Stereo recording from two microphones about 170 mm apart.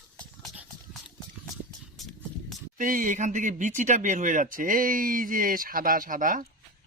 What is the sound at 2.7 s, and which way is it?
Speech, 50° right (ahead or behind).